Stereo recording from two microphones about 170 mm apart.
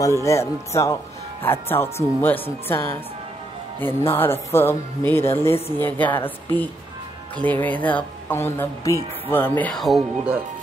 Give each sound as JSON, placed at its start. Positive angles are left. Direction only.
{"t": 0.2, "sound": "speech", "side_deg": 15}